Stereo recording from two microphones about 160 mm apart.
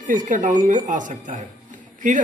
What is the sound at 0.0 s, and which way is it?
A woman's voice, 55° right (ahead or behind).